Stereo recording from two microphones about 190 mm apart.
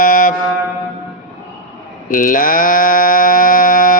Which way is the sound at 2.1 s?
45° left (ahead or behind).